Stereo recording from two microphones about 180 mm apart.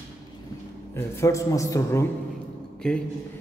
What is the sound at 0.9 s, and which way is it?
A man's voice, 15° left (ahead or behind).